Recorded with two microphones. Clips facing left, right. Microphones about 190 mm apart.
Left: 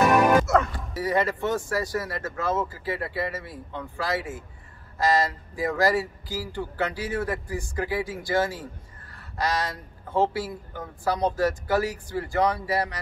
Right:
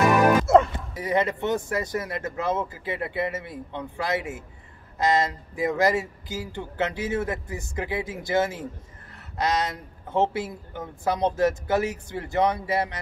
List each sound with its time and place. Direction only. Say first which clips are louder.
0.5 s speech: right 5 dB; 25° right (ahead or behind)